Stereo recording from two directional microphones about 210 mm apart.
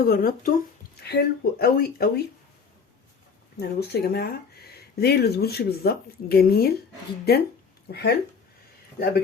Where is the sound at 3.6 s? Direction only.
50° left (ahead or behind).